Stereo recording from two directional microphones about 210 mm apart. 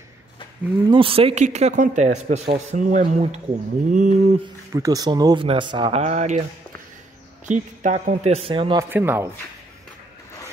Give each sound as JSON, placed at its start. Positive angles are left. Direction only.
{"t": 0.8, "sound": "speech", "side_deg": -25}
{"t": 4.7, "sound": "speech", "side_deg": -15}
{"t": 7.4, "sound": "speech", "side_deg": -35}
{"t": 8.8, "sound": "speech", "side_deg": -10}